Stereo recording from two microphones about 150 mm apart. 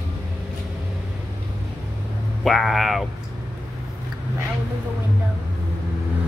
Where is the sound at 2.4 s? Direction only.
Centre (ahead or behind).